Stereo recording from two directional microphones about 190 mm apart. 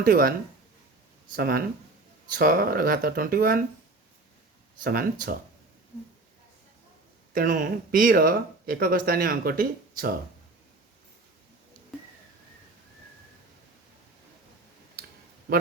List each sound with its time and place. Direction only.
0.0 s speech: 50° right (ahead or behind)
1.4 s speech: 50° right (ahead or behind)
4.8 s speech: 50° right (ahead or behind)
7.3 s speech: 45° right (ahead or behind)
15.5 s speech: 50° right (ahead or behind)